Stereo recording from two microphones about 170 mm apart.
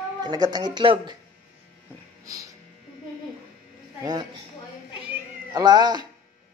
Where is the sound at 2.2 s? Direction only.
20° right (ahead or behind).